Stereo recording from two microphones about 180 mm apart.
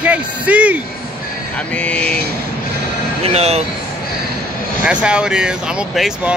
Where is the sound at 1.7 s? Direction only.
5° left (ahead or behind).